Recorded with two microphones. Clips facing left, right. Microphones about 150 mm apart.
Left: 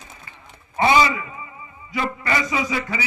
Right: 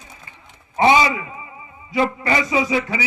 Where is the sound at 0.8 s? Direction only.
20° right (ahead or behind).